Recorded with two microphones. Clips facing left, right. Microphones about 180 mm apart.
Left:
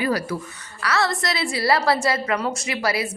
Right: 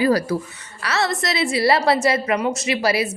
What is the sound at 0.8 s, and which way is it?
A woman's voice, 25° right (ahead or behind).